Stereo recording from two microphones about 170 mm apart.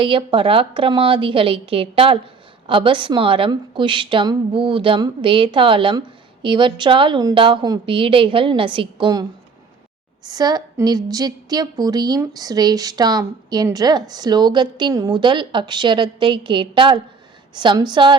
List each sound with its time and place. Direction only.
0.0 s a woman's voice: 30° right (ahead or behind)
10.2 s a woman's voice: 25° right (ahead or behind)